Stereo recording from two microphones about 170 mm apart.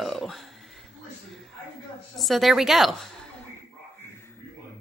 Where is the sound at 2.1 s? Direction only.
Centre (ahead or behind).